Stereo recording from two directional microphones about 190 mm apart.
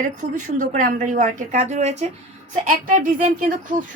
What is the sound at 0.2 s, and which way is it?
A woman's voice, 40° right (ahead or behind).